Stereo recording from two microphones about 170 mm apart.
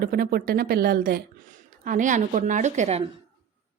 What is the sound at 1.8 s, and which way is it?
A woman's voice, 50° right (ahead or behind).